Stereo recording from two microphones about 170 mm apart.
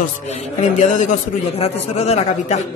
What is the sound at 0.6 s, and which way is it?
A man's voice, 45° left (ahead or behind).